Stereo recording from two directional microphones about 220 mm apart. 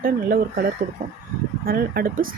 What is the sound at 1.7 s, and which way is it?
Speech, 40° right (ahead or behind).